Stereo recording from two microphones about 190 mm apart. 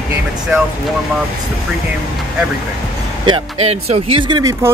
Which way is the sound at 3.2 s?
30° right (ahead or behind).